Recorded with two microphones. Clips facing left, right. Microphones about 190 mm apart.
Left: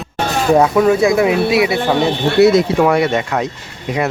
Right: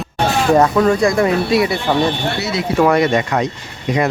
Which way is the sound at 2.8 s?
10° left (ahead or behind).